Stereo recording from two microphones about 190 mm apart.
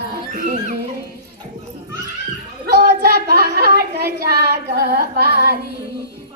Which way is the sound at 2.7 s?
55° right (ahead or behind).